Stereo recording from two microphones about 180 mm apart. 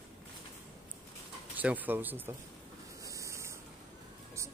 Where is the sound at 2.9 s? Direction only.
15° right (ahead or behind).